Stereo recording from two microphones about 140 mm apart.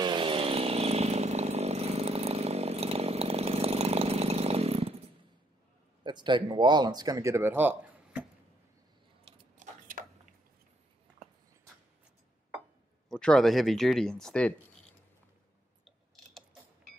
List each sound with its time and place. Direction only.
0.0 s chainsaw: 35° right (ahead or behind)
6.0 s speech: 35° right (ahead or behind); by 8.3 s 10° right (ahead or behind)
9.8 s a sound: 80° right
13.1 s speech: 5° left (ahead or behind)